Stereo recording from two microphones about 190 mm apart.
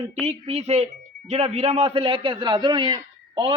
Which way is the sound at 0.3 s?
35° right (ahead or behind).